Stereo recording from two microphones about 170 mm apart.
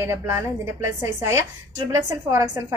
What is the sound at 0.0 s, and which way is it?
A woman's voice, 15° right (ahead or behind).